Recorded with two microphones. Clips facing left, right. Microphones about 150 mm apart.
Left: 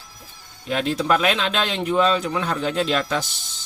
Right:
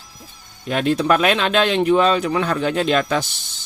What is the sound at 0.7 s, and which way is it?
Speech, 55° right (ahead or behind).